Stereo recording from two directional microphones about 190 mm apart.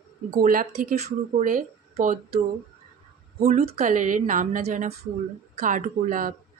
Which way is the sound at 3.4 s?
35° right (ahead or behind).